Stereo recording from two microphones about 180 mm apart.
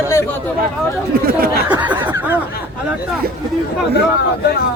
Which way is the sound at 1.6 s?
10° right (ahead or behind).